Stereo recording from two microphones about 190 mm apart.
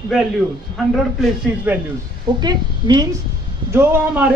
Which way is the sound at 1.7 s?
10° right (ahead or behind).